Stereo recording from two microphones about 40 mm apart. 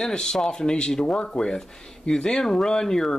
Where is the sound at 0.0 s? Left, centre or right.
Centre.